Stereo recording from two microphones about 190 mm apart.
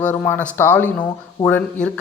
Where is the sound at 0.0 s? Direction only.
10° left (ahead or behind).